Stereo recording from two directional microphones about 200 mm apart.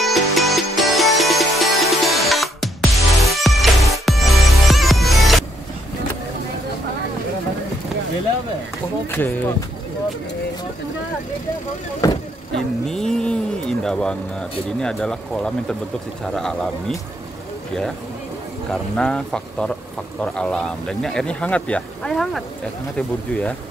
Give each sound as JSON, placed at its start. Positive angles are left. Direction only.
{"t": 0.0, "sound": "music", "side_deg": 0}
{"t": 9.0, "sound": "speech", "side_deg": 10}
{"t": 12.0, "sound": "speech", "side_deg": 15}
{"t": 12.5, "sound": "speech", "side_deg": 5}
{"t": 18.7, "sound": "speech", "side_deg": 5}